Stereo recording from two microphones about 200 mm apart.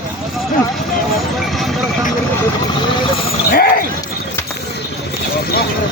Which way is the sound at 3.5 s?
50° left (ahead or behind).